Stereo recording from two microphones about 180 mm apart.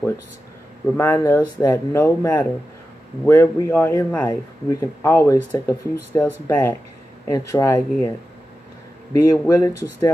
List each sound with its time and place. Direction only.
0.9 s speech: 15° left (ahead or behind)
9.1 s speech: 20° left (ahead or behind)